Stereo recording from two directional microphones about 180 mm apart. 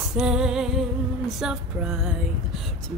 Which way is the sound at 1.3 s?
Centre (ahead or behind).